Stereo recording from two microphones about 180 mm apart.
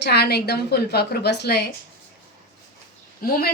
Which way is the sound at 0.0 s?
65° left (ahead or behind).